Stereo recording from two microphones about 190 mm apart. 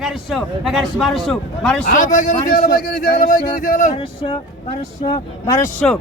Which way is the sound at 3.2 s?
45° left (ahead or behind).